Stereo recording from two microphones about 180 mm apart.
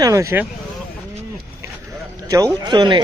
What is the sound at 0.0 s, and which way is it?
Speech, 15° right (ahead or behind).